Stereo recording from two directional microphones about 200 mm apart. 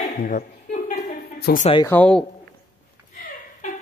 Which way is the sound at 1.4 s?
45° left (ahead or behind).